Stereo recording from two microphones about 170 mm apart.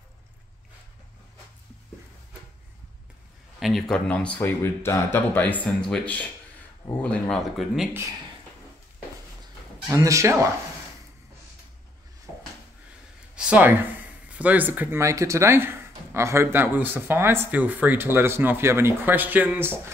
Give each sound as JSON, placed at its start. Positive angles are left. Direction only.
{"t": 3.5, "sound": "speech", "side_deg": 0}
{"t": 9.8, "sound": "speech", "side_deg": -20}
{"t": 13.4, "sound": "speech", "side_deg": -10}